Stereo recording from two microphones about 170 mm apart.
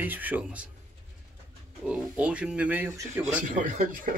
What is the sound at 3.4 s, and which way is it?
Speech, 50° right (ahead or behind).